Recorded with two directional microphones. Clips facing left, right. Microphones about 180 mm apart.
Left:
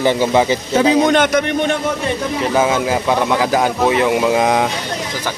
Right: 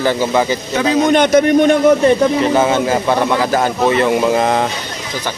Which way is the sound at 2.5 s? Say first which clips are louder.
Right 2 dB; 5° left (ahead or behind).